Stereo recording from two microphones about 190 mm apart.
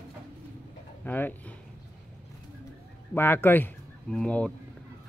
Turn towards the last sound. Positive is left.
turn(degrees=5)  # may be behind; listen again after turning